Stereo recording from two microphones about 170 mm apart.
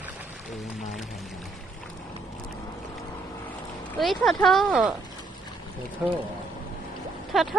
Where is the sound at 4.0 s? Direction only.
Centre (ahead or behind).